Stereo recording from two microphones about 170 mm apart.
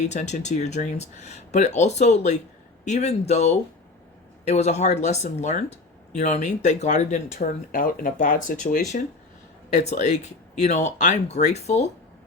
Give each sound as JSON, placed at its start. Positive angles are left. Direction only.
{"t": 0.0, "sound": "a man's voice", "side_deg": 45}